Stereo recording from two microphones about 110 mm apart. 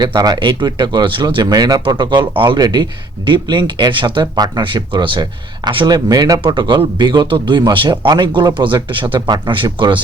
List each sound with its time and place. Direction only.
0.0 s speech: 40° right (ahead or behind)
6.4 s a man's voice: 45° right (ahead or behind)